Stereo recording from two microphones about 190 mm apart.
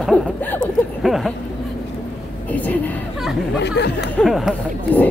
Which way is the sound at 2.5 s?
10° left (ahead or behind).